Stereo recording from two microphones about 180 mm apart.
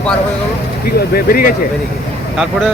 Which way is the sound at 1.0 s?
55° left (ahead or behind).